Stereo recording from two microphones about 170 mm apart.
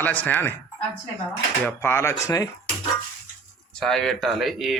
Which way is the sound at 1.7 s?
15° left (ahead or behind).